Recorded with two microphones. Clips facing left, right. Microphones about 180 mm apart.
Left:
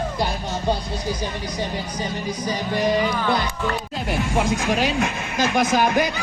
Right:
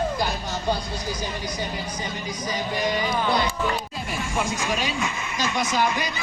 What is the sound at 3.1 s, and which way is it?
Speech, 20° right (ahead or behind).